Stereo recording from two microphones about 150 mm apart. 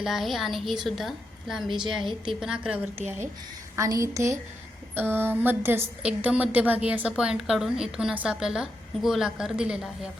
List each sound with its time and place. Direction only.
0.0 s a woman's voice: centre (ahead or behind)
1.6 s a woman's voice: 30° right (ahead or behind)
2.4 s a woman's voice: 5° right (ahead or behind)
3.8 s a woman's voice: 20° right (ahead or behind); by 10.1 s 5° right (ahead or behind)